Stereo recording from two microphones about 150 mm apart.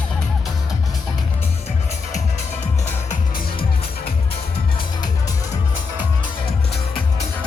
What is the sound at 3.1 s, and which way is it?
Music, 80° left.